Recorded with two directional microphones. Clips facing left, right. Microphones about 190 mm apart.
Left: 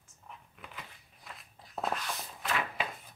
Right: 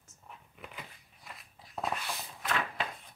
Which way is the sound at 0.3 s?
5° right (ahead or behind).